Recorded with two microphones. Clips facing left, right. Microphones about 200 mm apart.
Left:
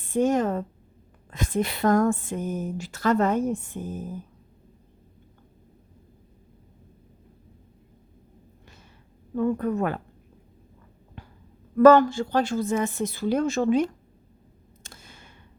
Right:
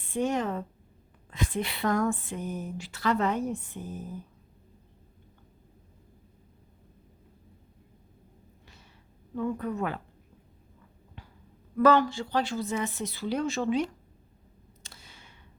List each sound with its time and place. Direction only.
0.0 s speech: 45° left (ahead or behind)
9.3 s speech: 50° left (ahead or behind)
11.8 s speech: 45° left (ahead or behind)
14.8 s a sound: 50° left (ahead or behind)